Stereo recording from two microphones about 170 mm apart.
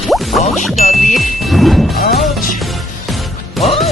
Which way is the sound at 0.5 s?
Centre (ahead or behind).